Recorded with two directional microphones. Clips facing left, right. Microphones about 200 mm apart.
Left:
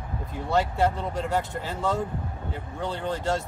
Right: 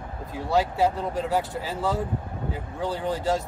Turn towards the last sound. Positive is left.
turn(degrees=-5)  # may be behind; listen again after turning